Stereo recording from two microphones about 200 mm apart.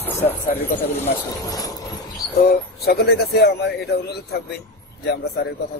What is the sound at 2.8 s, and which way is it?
A man's voice, 50° left (ahead or behind).